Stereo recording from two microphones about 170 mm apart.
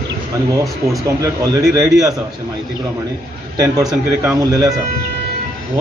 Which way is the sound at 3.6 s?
20° right (ahead or behind).